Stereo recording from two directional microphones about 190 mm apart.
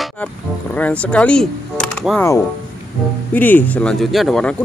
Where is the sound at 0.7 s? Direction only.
5° left (ahead or behind).